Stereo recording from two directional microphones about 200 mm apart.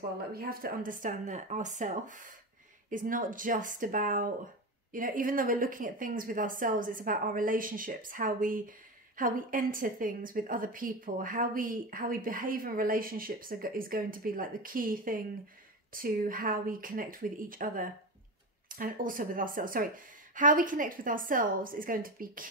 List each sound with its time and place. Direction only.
0.3 s speech: 50° right (ahead or behind)